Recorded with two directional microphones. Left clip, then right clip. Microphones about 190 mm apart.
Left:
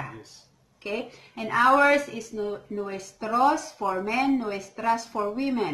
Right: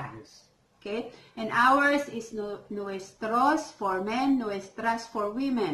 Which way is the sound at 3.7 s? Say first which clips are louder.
Left 2 dB; 25° left (ahead or behind).